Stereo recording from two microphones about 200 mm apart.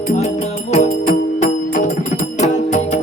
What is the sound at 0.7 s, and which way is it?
Music, 35° left (ahead or behind).